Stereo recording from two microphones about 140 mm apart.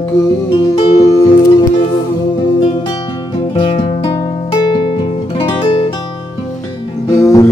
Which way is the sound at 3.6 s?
40° left (ahead or behind).